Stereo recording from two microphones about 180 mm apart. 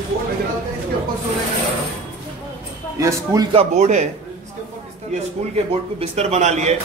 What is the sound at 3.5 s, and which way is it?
Speech, 35° right (ahead or behind).